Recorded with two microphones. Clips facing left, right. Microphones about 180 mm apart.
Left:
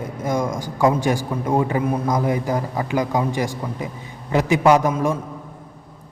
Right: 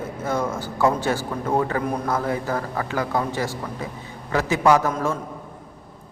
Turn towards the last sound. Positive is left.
turn(degrees=15)  # may be behind; listen again after turning